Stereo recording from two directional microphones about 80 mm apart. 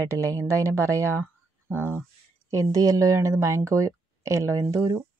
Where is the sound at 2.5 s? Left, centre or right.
Right.